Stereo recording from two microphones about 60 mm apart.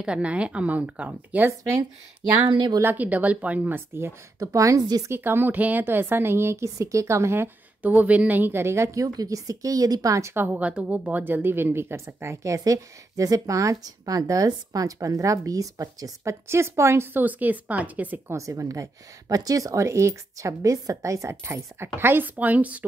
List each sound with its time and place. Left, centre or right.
0.0 s speech: centre
2.8 s speech: right
4.5 s a woman's voice: right
5.1 s speech: right
7.8 s speech: right
8.9 s speech: right
10.3 s speech: right
10.6 s a woman's voice: right
16.4 s speech: right
17.2 s speech: right
18.3 s a woman's voice: right